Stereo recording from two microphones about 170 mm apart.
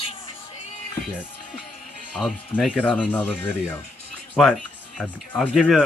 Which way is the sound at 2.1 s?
Centre (ahead or behind).